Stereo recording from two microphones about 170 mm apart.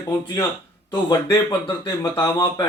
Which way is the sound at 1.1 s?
20° left (ahead or behind).